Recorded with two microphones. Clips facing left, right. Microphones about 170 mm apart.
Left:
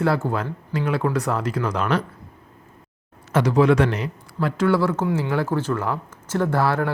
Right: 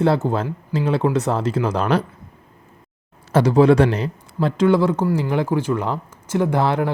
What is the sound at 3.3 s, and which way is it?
Speech, 30° right (ahead or behind).